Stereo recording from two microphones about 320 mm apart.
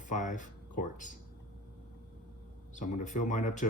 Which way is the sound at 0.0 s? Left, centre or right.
Left.